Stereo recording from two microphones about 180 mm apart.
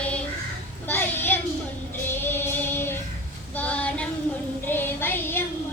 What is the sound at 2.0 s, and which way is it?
Music, 10° left (ahead or behind).